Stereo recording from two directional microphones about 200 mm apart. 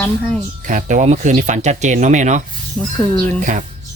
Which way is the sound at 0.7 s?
40° right (ahead or behind).